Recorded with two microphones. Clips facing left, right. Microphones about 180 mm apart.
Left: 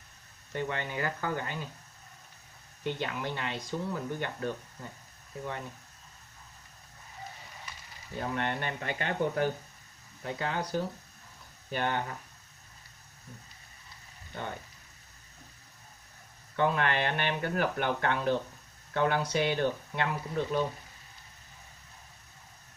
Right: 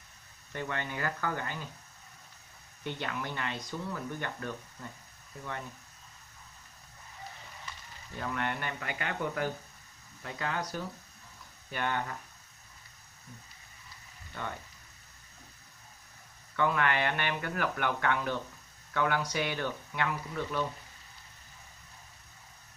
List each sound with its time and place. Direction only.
0.6 s speech: 20° left (ahead or behind)
2.8 s speech: 20° left (ahead or behind)
8.2 s speech: 30° left (ahead or behind)
16.5 s speech: 25° left (ahead or behind)